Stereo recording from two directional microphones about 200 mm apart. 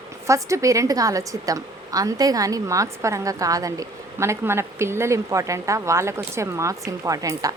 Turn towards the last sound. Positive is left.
turn(degrees=-15)  # may be behind; listen again after turning